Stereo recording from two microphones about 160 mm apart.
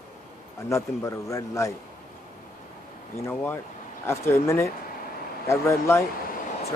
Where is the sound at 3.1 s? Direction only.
15° left (ahead or behind).